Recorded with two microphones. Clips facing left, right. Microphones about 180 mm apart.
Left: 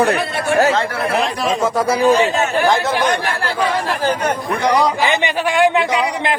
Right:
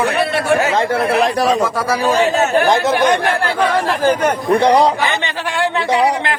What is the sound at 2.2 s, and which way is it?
Speech, 40° right (ahead or behind).